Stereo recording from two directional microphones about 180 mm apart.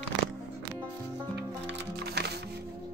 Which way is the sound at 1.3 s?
65° right (ahead or behind).